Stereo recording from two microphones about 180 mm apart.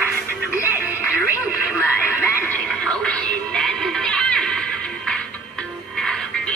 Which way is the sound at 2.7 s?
Centre (ahead or behind).